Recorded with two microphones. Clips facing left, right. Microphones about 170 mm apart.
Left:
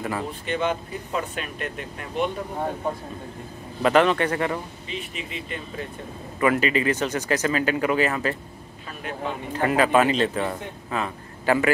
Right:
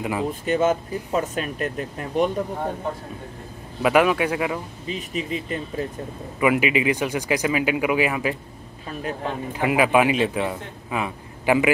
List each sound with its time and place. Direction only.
0.0 s a man's voice: 15° right (ahead or behind)
0.5 s speech: 45° right (ahead or behind)
3.8 s a man's voice: 10° right (ahead or behind)
4.8 s speech: 40° right (ahead or behind)
6.4 s a man's voice: 15° right (ahead or behind)
9.5 s a man's voice: 10° right (ahead or behind)